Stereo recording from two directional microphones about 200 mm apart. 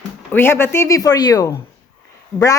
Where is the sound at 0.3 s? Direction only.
10° left (ahead or behind).